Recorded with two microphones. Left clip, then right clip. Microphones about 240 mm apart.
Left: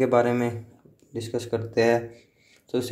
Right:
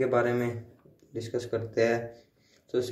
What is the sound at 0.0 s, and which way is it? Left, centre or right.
Speech, left.